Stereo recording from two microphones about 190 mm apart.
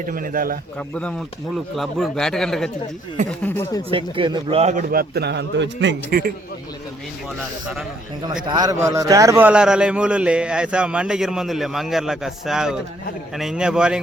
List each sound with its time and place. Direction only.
0.0 s a man's voice: 45° right (ahead or behind)
1.5 s speech: centre (ahead or behind)
3.8 s a man's voice: 30° right (ahead or behind); by 6.0 s 70° right (ahead or behind)
6.1 s a man's voice: 45° right (ahead or behind)
8.4 s speech: 20° right (ahead or behind); by 14.0 s 5° right (ahead or behind)